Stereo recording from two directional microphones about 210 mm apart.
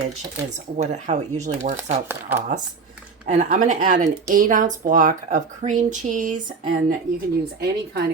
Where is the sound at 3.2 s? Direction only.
35° right (ahead or behind).